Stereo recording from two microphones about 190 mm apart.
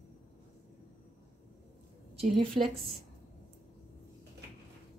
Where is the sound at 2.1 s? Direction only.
30° right (ahead or behind).